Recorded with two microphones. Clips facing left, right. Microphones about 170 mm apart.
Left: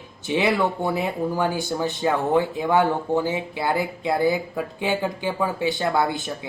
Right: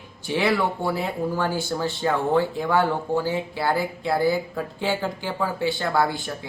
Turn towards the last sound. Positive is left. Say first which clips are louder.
# left 1 dB
turn(degrees=20)  # may be behind; listen again after turning